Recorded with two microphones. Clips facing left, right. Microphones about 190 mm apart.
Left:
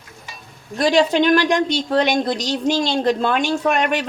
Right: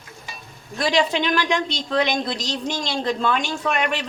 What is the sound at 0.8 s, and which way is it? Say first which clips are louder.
Speech: left 5 dB; 45° left (ahead or behind).